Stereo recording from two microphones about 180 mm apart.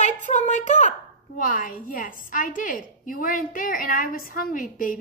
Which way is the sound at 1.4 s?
45° left (ahead or behind).